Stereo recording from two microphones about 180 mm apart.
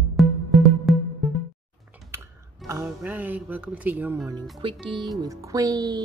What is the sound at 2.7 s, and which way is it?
Music, 10° right (ahead or behind).